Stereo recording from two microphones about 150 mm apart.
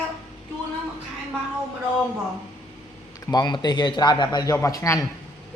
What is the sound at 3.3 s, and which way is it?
A man's voice, 25° left (ahead or behind).